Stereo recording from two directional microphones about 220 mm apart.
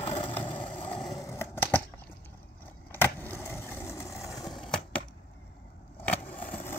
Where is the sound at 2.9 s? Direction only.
10° left (ahead or behind).